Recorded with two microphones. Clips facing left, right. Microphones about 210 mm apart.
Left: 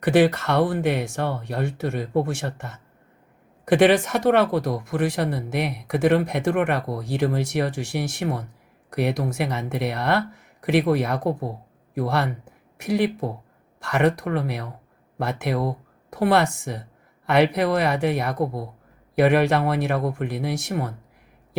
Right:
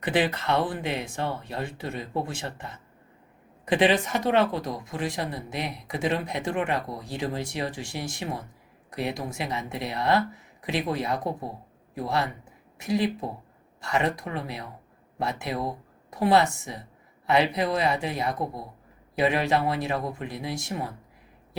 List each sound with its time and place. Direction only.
0.0 s speech: 65° left (ahead or behind)